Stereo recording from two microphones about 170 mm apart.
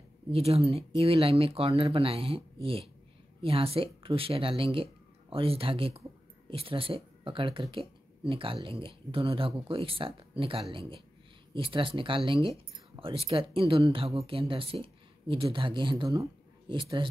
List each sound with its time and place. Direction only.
0.3 s speech: 35° right (ahead or behind)